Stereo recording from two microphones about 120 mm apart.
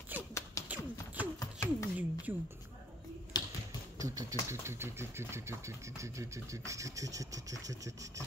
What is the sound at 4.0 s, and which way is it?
Speech, 30° right (ahead or behind).